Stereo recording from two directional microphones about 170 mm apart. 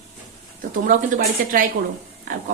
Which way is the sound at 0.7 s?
50° right (ahead or behind).